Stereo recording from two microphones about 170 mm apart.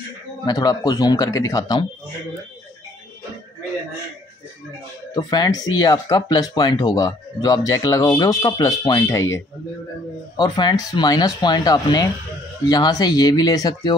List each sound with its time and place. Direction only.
0.5 s speech: 20° left (ahead or behind)
5.1 s speech: 25° left (ahead or behind)